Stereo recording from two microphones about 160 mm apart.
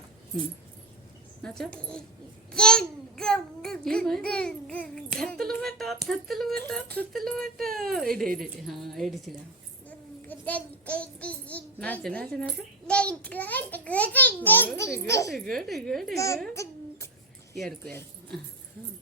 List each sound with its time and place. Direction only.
1.4 s a child's voice: 5° left (ahead or behind)
7.7 s speech: 65° right (ahead or behind)
8.4 s a child's voice: centre (ahead or behind)
10.2 s a child's voice: 10° left (ahead or behind)
15.3 s a child's voice: centre (ahead or behind)
16.1 s a woman's voice: 20° left (ahead or behind)
17.6 s a child's voice: 5° left (ahead or behind)